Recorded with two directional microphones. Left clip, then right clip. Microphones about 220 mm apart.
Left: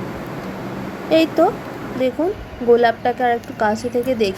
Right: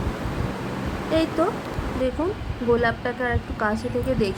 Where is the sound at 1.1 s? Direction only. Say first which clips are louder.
Left 8 dB; 20° left (ahead or behind).